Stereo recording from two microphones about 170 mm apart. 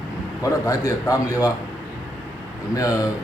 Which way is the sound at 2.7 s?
20° left (ahead or behind).